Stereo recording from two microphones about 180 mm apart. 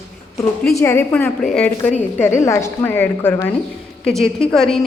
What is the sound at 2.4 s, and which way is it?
A woman's voice, 15° left (ahead or behind).